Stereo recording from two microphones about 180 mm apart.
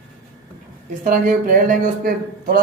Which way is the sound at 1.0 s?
50° right (ahead or behind).